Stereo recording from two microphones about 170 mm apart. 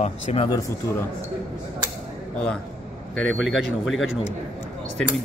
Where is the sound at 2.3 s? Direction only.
5° left (ahead or behind).